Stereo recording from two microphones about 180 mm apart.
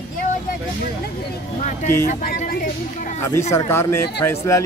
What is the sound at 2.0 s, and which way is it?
Speech, 50° left (ahead or behind).